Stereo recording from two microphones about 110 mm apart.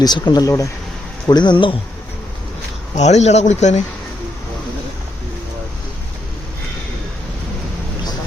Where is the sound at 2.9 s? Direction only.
90° left.